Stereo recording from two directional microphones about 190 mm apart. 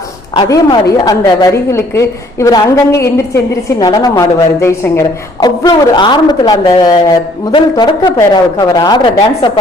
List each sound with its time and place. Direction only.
0.3 s a woman's voice: 20° left (ahead or behind)